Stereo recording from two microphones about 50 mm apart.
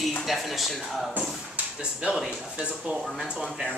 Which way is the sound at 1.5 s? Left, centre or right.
Centre.